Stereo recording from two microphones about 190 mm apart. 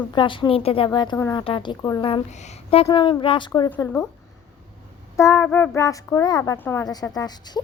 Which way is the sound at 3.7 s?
10° left (ahead or behind).